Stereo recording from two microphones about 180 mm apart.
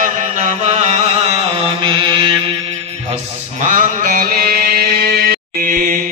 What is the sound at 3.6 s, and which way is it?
Mantra, 45° right (ahead or behind).